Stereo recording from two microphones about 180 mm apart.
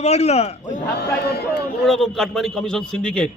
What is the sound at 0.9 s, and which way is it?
Speech, 65° left (ahead or behind).